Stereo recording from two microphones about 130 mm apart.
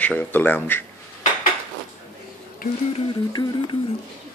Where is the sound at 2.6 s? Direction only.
90° left.